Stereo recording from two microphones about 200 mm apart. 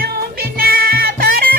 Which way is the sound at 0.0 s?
50° right (ahead or behind).